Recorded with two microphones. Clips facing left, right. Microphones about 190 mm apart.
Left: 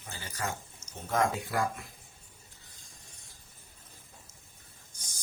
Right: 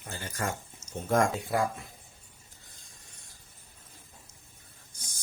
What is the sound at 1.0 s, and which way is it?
Speech, 50° right (ahead or behind).